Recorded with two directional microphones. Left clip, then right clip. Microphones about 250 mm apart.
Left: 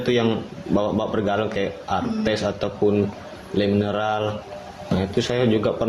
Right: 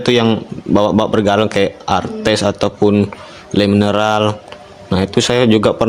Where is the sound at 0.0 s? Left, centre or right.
Right.